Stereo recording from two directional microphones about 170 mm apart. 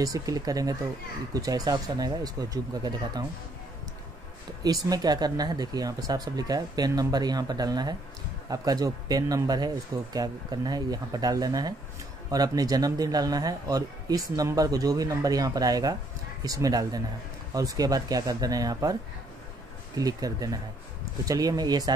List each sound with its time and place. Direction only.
0.0 s a man's voice: 20° right (ahead or behind)
4.6 s a man's voice: 20° right (ahead or behind)
20.0 s a man's voice: 20° right (ahead or behind)